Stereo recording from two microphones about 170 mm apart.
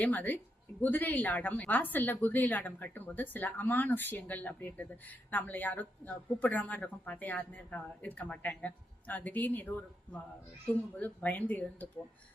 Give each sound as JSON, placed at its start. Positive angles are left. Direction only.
{"t": 0.0, "sound": "speech", "side_deg": 10}